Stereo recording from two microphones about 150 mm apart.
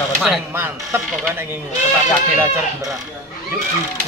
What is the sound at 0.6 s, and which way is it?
Speech, 15° right (ahead or behind).